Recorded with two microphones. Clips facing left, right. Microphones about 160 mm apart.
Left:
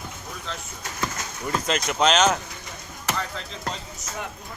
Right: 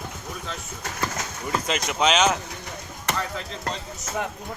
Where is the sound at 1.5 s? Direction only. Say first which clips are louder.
Left 1 dB; 5° right (ahead or behind).